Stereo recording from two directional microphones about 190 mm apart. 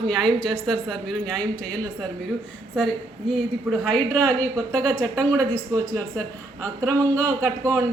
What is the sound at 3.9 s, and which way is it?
Speech, 5° left (ahead or behind).